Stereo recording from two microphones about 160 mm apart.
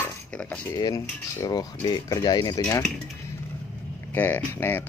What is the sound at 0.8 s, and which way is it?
Cutlery, 20° left (ahead or behind).